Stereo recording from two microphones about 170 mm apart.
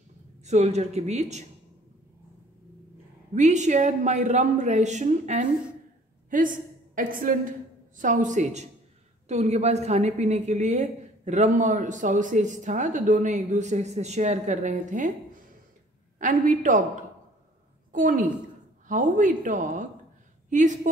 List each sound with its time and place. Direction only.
0.4 s speech: 40° right (ahead or behind)
3.3 s a woman's voice: 45° right (ahead or behind)
16.2 s a woman's voice: 50° right (ahead or behind)
17.9 s a woman's voice: 50° right (ahead or behind)